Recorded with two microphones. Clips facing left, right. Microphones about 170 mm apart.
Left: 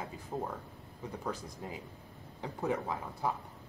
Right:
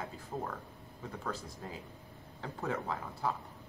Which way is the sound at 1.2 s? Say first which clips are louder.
Left 1 dB; 15° left (ahead or behind).